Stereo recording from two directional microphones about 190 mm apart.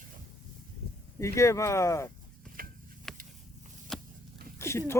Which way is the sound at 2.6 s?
50° right (ahead or behind).